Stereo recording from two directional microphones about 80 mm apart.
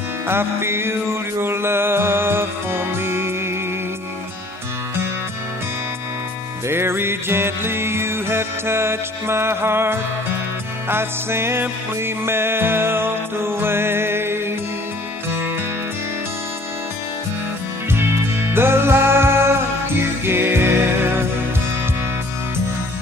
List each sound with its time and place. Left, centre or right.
0.3 s music: right
6.7 s music: right
18.5 s music: right